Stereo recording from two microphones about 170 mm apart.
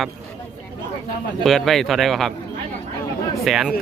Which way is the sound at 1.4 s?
Centre (ahead or behind).